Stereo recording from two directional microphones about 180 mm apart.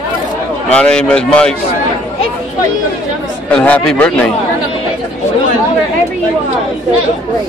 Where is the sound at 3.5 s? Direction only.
10° left (ahead or behind).